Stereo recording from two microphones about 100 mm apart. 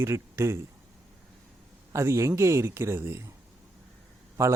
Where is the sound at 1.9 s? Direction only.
30° right (ahead or behind).